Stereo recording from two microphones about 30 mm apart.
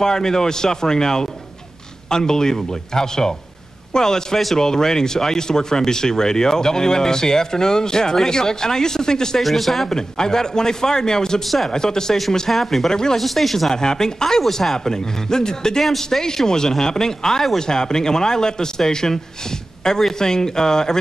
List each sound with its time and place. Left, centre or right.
0.0 s speech: centre
9.4 s speech: centre
9.8 s speech: left
11.4 s speech: centre
11.7 s speech: left
12.4 s speech: centre
12.9 s speech: left
13.2 s speech: centre
13.7 s speech: left